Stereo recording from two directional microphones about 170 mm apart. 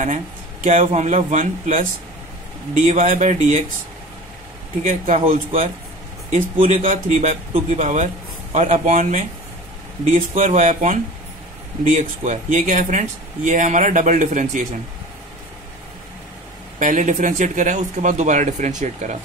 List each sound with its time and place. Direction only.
0.0 s speech: 50° right (ahead or behind)
4.8 s speech: 50° right (ahead or behind)
5.2 s speech: 35° right (ahead or behind)
16.8 s speech: 45° right (ahead or behind)